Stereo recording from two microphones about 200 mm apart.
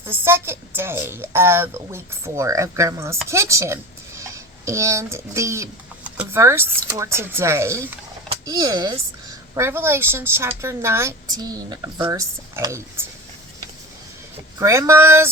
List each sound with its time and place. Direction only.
0.0 s speech: 10° right (ahead or behind)
14.6 s speech: 15° right (ahead or behind)